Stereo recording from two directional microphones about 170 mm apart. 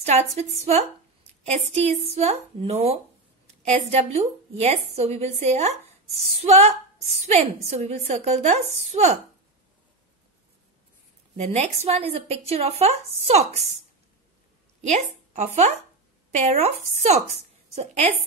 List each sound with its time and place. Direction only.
0.0 s a woman's voice: 40° right (ahead or behind)
11.3 s a woman's voice: 40° right (ahead or behind)
14.8 s a woman's voice: 40° right (ahead or behind)